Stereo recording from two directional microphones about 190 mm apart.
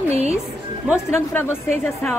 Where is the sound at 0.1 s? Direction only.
35° right (ahead or behind).